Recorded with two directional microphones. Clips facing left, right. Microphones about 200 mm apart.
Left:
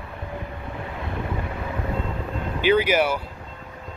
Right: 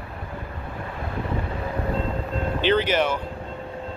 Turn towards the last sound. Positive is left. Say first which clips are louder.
# left 2 dB
turn(degrees=10)  # may be behind; listen again after turning